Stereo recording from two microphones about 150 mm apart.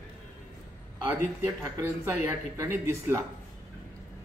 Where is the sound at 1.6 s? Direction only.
20° right (ahead or behind).